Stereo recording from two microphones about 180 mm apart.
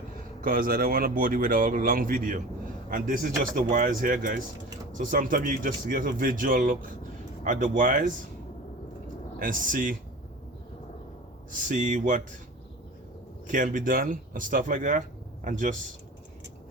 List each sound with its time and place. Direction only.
0.4 s speech: 50° right (ahead or behind)
9.4 s speech: 50° right (ahead or behind)
11.7 s speech: 45° right (ahead or behind)
13.5 s speech: 45° right (ahead or behind)